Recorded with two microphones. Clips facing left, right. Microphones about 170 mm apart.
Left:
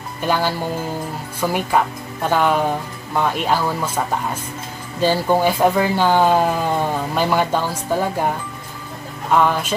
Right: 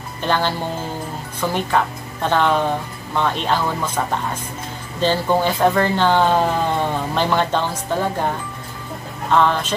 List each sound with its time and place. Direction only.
0.2 s speech: 10° left (ahead or behind)
5.0 s speech: 10° left (ahead or behind)
9.3 s speech: 10° left (ahead or behind)